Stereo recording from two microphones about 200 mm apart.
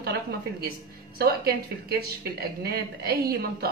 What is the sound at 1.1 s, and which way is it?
A woman's voice, 50° right (ahead or behind).